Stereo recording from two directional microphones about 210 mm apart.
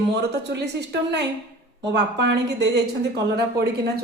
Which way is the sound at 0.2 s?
50° right (ahead or behind).